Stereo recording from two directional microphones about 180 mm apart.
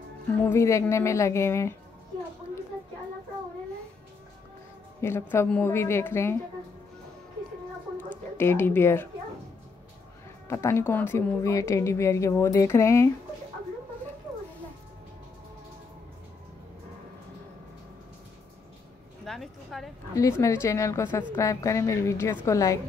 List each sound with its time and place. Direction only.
0.5 s speech: 15° left (ahead or behind)
5.0 s speech: 15° left (ahead or behind)
8.1 s speech: 10° left (ahead or behind)
10.5 s speech: 15° left (ahead or behind)
19.2 s a sound: centre (ahead or behind)
20.2 s speech: 15° left (ahead or behind)